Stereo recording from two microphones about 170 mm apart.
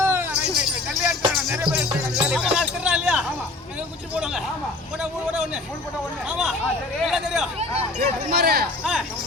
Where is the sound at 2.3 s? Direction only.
5° right (ahead or behind).